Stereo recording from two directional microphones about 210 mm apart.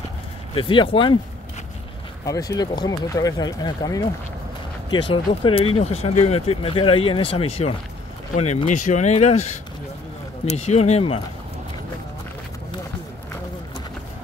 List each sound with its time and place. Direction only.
0.6 s speech: 25° left (ahead or behind)
2.2 s speech: 15° left (ahead or behind)